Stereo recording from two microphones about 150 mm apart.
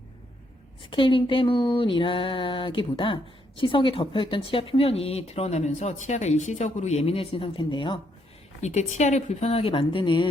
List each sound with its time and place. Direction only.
0.9 s speech: 35° left (ahead or behind)
8.6 s speech: 50° left (ahead or behind); by 10.2 s 35° left (ahead or behind)